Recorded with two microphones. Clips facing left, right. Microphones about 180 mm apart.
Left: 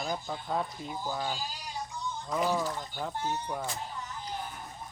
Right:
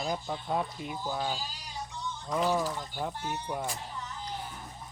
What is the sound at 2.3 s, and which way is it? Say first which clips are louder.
Speech: right 1 dB; 5° left (ahead or behind).